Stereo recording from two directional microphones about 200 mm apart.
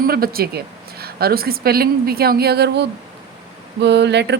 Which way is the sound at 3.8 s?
60° right (ahead or behind).